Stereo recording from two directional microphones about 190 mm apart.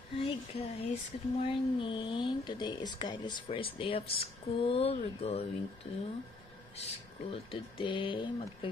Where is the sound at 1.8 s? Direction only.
25° left (ahead or behind).